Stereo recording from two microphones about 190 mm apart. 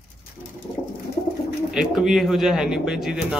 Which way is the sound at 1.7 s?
Centre (ahead or behind).